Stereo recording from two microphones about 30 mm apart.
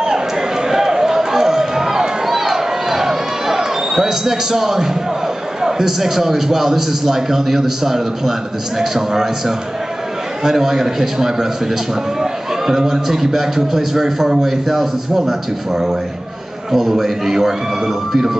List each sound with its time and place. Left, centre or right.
0.7 s a sound: centre
5.6 s a man's voice: centre
10.4 s a man's voice: centre
16.7 s a man's voice: centre